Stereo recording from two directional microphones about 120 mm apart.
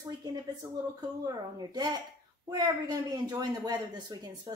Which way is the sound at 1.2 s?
35° right (ahead or behind).